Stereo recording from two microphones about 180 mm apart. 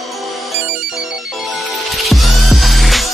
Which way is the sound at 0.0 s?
Centre (ahead or behind).